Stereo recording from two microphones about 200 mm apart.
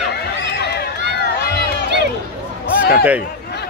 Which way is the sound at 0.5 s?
55° left (ahead or behind).